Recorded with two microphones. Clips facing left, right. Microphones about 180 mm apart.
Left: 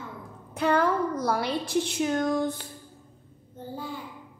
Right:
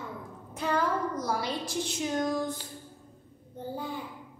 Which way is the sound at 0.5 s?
65° left (ahead or behind).